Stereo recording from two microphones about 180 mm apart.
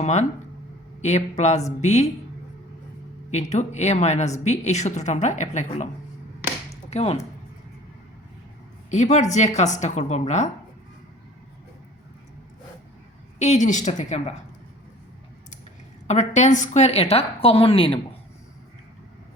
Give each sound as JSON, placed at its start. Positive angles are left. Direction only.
{"t": 0.0, "sound": "a woman's voice", "side_deg": 40}
{"t": 3.3, "sound": "a woman's voice", "side_deg": 40}
{"t": 6.9, "sound": "a woman's voice", "side_deg": 35}
{"t": 8.9, "sound": "a woman's voice", "side_deg": 40}
{"t": 13.4, "sound": "a woman's voice", "side_deg": 40}
{"t": 16.0, "sound": "a woman's voice", "side_deg": 40}